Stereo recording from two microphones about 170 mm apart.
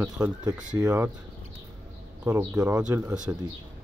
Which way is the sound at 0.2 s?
20° right (ahead or behind).